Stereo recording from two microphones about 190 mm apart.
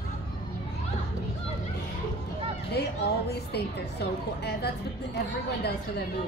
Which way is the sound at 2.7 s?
60° left (ahead or behind).